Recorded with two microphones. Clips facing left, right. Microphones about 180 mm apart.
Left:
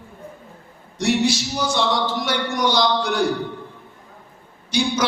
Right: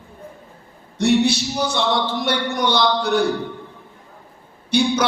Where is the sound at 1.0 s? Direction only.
60° right (ahead or behind).